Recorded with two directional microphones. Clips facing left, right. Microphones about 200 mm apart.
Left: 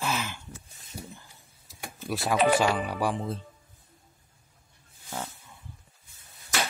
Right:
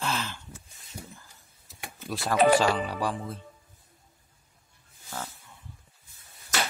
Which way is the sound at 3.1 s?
30° left (ahead or behind).